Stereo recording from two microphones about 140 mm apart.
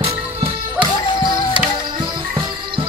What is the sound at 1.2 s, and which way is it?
Music, 35° right (ahead or behind).